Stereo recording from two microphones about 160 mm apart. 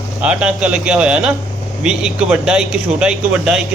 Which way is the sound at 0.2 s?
5° right (ahead or behind).